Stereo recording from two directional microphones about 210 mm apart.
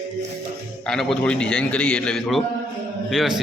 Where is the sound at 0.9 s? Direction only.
Centre (ahead or behind).